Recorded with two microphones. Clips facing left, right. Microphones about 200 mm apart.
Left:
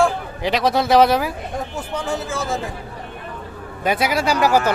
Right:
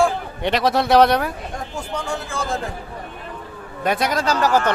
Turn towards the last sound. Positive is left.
turn(degrees=10)  # may be behind; listen again after turning